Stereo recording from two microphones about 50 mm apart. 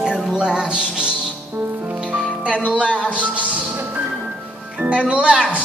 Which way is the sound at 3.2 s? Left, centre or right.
Right.